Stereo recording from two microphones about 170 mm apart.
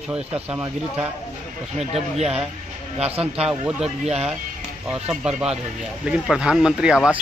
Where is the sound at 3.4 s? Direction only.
5° right (ahead or behind).